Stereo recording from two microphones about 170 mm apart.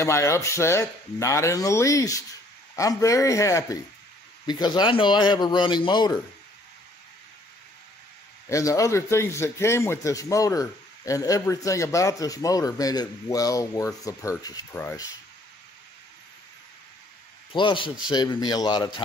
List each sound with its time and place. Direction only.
0.0 s a man's voice: 15° left (ahead or behind)
8.5 s a man's voice: 20° left (ahead or behind)
17.5 s a man's voice: 30° left (ahead or behind)